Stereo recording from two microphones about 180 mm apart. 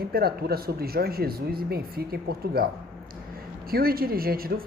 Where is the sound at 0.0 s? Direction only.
60° right (ahead or behind).